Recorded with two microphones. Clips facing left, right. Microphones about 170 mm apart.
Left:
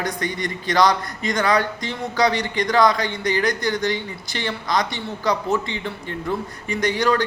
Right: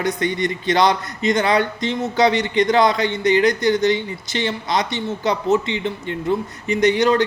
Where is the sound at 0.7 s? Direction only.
25° right (ahead or behind).